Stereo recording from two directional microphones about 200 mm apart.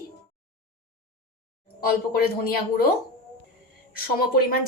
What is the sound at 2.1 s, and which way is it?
Speech, 45° left (ahead or behind).